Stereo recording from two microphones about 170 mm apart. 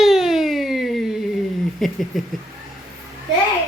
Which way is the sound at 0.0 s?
Centre (ahead or behind).